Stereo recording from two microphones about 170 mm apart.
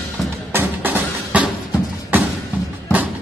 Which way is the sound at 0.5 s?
10° right (ahead or behind).